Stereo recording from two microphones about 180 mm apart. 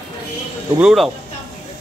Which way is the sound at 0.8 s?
Centre (ahead or behind).